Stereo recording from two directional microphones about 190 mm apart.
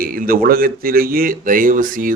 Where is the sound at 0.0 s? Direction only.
50° right (ahead or behind).